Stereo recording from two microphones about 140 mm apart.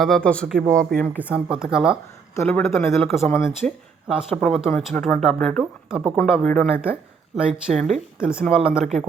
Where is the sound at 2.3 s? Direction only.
15° left (ahead or behind).